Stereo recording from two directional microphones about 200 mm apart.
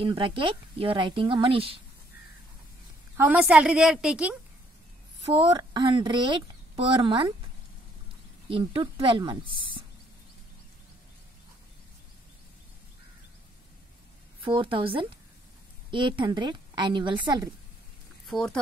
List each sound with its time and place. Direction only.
0.0 s a woman's voice: 25° right (ahead or behind)
3.2 s a woman's voice: 5° right (ahead or behind)
5.3 s a woman's voice: 25° right (ahead or behind)
8.5 s a woman's voice: 25° right (ahead or behind)
14.4 s a woman's voice: 25° right (ahead or behind)
18.2 s speech: centre (ahead or behind)